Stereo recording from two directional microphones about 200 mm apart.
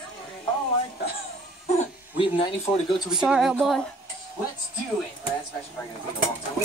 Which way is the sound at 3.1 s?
5° right (ahead or behind).